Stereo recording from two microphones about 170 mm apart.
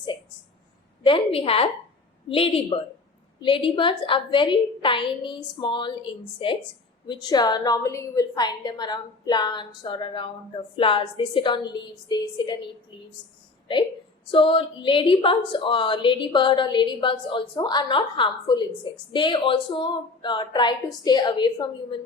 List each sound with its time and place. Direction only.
1.0 s a woman's voice: 30° left (ahead or behind)
13.7 s a woman's voice: 30° left (ahead or behind)